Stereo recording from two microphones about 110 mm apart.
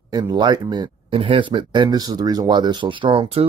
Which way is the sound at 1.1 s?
55° right (ahead or behind).